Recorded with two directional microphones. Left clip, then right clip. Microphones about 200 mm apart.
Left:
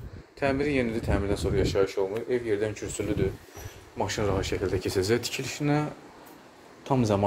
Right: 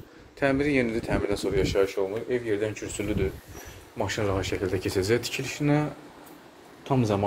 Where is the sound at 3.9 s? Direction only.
Centre (ahead or behind).